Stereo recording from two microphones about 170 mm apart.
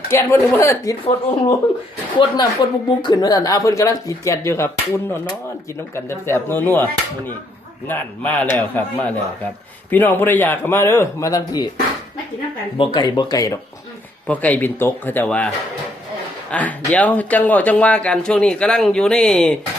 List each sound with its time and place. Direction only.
0.1 s speech: 15° left (ahead or behind)
1.0 s speech: 30° left (ahead or behind)
6.1 s speech: 15° left (ahead or behind)
7.9 s speech: 10° left (ahead or behind)
12.7 s speech: 30° left (ahead or behind); by 19.5 s 5° left (ahead or behind)